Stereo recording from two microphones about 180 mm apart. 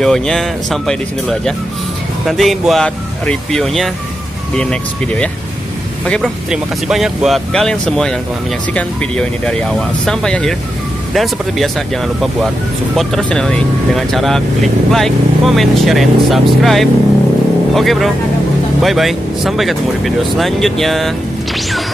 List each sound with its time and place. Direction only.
0.0 s speech: 5° left (ahead or behind)
12.9 s speech: centre (ahead or behind)